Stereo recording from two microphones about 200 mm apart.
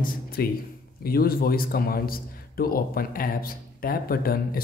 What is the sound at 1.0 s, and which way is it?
A man's voice, 50° left (ahead or behind).